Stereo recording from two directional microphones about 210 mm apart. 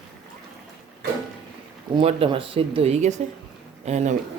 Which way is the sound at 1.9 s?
25° right (ahead or behind).